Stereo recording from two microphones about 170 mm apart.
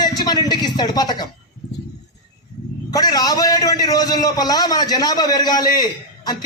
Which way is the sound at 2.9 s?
20° left (ahead or behind).